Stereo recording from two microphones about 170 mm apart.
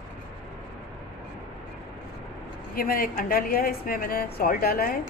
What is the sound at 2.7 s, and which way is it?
A woman's voice, 60° left (ahead or behind).